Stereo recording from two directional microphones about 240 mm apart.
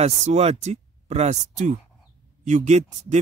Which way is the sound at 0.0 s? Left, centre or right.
Right.